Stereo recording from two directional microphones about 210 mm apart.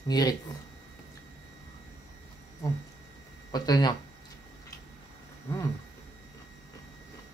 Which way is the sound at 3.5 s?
20° left (ahead or behind).